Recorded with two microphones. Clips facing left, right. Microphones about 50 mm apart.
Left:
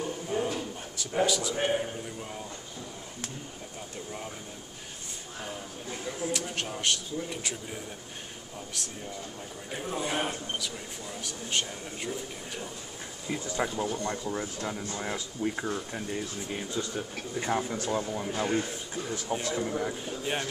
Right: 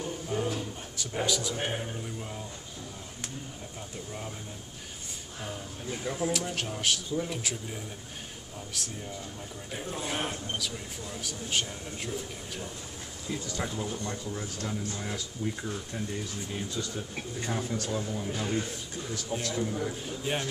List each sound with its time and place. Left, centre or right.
0.0 s a sound: centre
1.6 s speech: centre
6.0 s speech: centre
13.3 s speech: left
20.1 s speech: centre